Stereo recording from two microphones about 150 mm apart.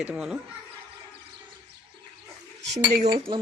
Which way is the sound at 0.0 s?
5° right (ahead or behind).